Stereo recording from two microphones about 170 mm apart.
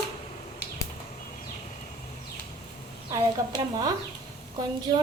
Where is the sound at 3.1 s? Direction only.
20° right (ahead or behind).